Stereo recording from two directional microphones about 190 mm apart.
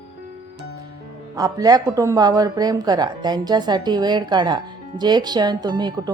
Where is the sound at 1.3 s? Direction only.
20° right (ahead or behind).